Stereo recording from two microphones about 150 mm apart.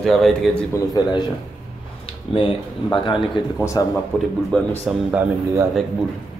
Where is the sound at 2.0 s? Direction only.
35° left (ahead or behind).